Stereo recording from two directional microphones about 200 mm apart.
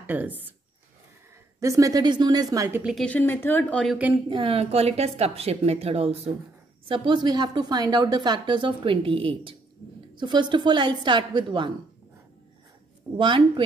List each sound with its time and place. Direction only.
0.0 s speech: 10° right (ahead or behind)
1.6 s speech: 15° right (ahead or behind)
2.8 s speech: centre (ahead or behind)
4.3 s a woman's voice: 25° right (ahead or behind)
13.0 s speech: centre (ahead or behind)